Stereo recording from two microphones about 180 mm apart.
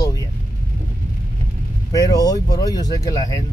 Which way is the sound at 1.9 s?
20° left (ahead or behind).